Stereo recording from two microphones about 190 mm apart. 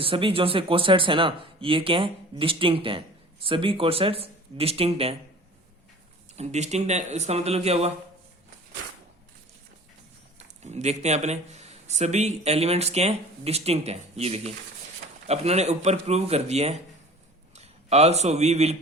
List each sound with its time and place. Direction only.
0.0 s speech: 30° right (ahead or behind)
6.3 s speech: 35° right (ahead or behind)
10.3 s a man's voice: 35° right (ahead or behind)